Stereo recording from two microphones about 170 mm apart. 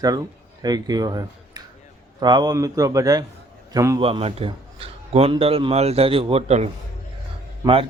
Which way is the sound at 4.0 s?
30° right (ahead or behind).